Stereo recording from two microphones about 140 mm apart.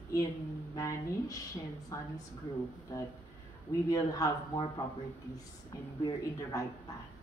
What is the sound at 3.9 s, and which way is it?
Speech, 25° left (ahead or behind).